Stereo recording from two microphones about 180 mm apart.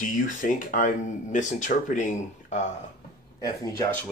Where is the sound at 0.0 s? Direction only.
45° left (ahead or behind).